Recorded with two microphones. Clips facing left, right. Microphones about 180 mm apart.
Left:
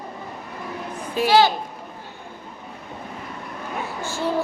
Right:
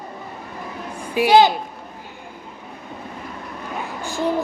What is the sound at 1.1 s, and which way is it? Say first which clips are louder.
Child singing: right 3 dB; 15° right (ahead or behind).